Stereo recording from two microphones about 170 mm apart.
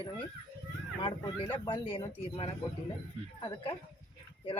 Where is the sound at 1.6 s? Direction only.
30° left (ahead or behind).